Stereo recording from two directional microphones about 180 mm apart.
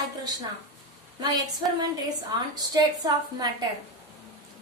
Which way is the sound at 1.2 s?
20° right (ahead or behind).